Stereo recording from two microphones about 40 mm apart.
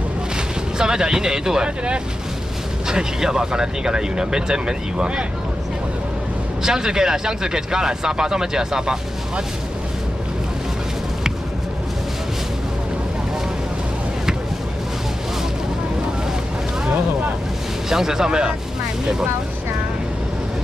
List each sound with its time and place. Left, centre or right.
0.7 s speech: centre
2.9 s speech: centre
6.6 s speech: centre
17.8 s speech: centre